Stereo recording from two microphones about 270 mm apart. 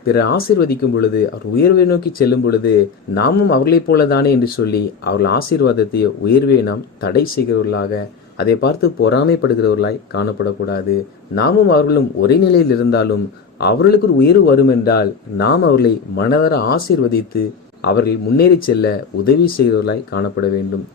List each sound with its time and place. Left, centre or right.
0.1 s speech: left
18.3 s speech: left